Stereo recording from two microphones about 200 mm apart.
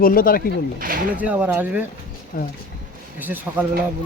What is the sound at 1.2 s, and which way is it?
Speech, 5° right (ahead or behind).